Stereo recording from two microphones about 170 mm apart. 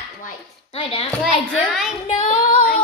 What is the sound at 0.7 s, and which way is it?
Speech, 35° left (ahead or behind).